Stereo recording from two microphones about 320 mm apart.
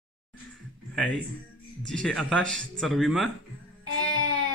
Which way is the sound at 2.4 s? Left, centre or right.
Right.